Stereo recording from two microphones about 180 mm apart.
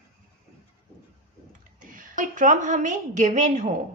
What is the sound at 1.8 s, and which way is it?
A woman's voice, 50° right (ahead or behind).